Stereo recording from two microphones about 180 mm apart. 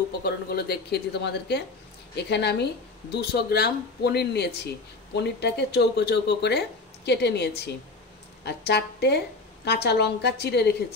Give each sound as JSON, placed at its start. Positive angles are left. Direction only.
{"t": 0.2, "sound": "speech", "side_deg": 60}